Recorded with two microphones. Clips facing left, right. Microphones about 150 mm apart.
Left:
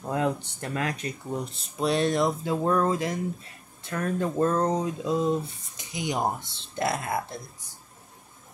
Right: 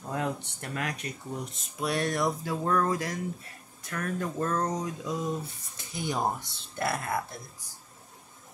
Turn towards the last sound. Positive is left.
turn(degrees=20)  # may be behind; listen again after turning